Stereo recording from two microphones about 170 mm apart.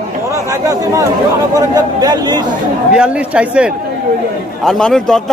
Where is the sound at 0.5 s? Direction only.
20° right (ahead or behind).